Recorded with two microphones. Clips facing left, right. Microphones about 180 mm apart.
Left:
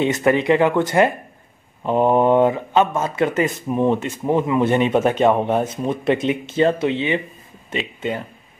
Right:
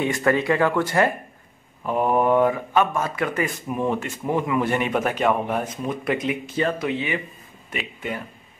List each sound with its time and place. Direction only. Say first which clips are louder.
0.0 s speech: left 4 dB; 20° left (ahead or behind)